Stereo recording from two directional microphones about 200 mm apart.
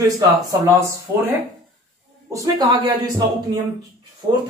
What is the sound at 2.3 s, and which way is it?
Speech, 20° right (ahead or behind).